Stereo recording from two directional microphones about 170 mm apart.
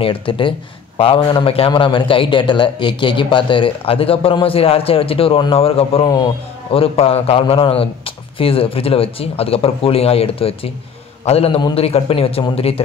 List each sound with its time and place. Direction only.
0.0 s speech: 30° left (ahead or behind)